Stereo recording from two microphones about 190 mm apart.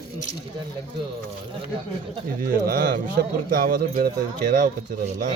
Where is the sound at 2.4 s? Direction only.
50° right (ahead or behind).